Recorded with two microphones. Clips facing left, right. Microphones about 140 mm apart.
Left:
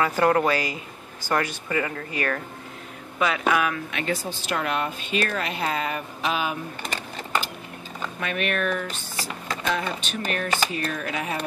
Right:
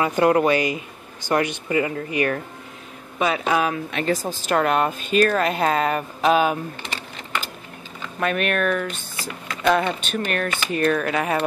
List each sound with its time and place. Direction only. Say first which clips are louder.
0.0 s speech: right 3 dB; 20° right (ahead or behind); by 6.6 s 45° right (ahead or behind)
8.2 s speech: right 5 dB; 50° right (ahead or behind)